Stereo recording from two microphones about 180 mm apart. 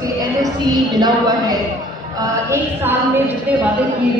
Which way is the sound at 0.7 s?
20° right (ahead or behind).